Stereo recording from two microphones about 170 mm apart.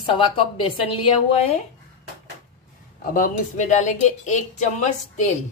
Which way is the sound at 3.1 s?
50° left (ahead or behind).